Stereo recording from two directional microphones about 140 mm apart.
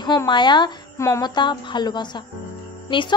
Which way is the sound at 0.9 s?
20° left (ahead or behind).